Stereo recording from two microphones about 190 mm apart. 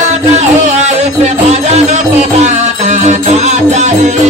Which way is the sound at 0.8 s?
35° right (ahead or behind).